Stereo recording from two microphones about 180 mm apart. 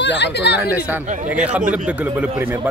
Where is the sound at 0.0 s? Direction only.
75° left (ahead or behind).